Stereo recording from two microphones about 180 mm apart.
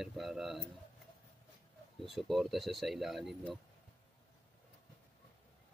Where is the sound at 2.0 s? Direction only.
Centre (ahead or behind).